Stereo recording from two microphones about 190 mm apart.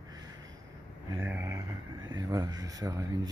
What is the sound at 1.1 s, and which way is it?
Speech, 10° right (ahead or behind).